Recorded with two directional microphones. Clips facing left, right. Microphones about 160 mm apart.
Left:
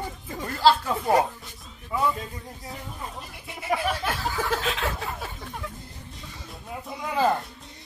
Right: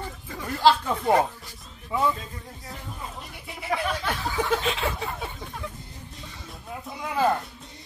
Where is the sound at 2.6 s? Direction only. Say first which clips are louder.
Left 1 dB; centre (ahead or behind).